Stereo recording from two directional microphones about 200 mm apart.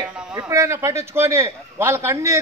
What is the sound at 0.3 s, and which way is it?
A man's voice, 15° right (ahead or behind).